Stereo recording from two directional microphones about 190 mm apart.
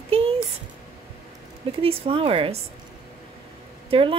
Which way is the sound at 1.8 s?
30° right (ahead or behind).